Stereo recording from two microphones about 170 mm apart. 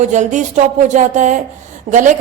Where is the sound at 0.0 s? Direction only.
45° right (ahead or behind).